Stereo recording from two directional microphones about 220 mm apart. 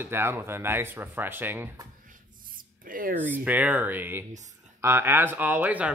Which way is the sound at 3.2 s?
10° right (ahead or behind).